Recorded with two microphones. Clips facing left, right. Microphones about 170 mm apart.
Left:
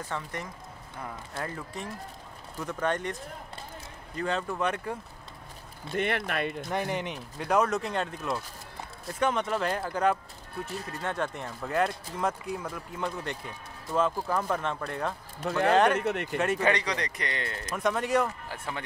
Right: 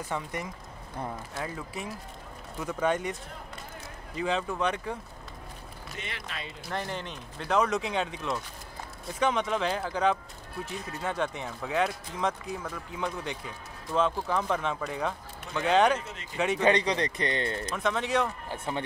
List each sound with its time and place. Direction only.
0.1 s speech: 10° right (ahead or behind)
5.9 s speech: 60° left (ahead or behind)
6.7 s speech: 15° left (ahead or behind); by 15.1 s centre (ahead or behind)
15.4 s speech: 65° left (ahead or behind)
16.3 s speech: centre (ahead or behind)
16.6 s speech: 25° right (ahead or behind)
17.6 s speech: 10° left (ahead or behind)
18.5 s speech: 25° right (ahead or behind)